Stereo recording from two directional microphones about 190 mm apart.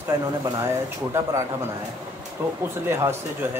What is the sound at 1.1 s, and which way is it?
Speech, 10° right (ahead or behind).